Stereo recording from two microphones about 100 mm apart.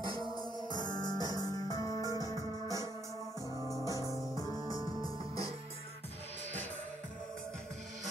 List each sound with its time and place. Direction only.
0.4 s music: 45° left (ahead or behind)
3.9 s music: 35° right (ahead or behind)